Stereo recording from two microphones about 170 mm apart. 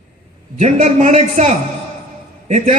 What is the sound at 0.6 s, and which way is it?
A man's voice, 45° right (ahead or behind).